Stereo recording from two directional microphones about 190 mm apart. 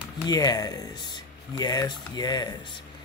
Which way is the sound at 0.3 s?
20° left (ahead or behind).